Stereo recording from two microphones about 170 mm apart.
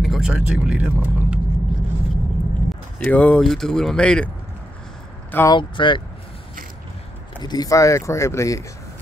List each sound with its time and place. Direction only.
0.0 s speech: centre (ahead or behind)
3.0 s speech: 5° left (ahead or behind)
5.3 s speech: 15° left (ahead or behind)
5.6 s speech: 30° left (ahead or behind)
7.3 s speech: 25° left (ahead or behind)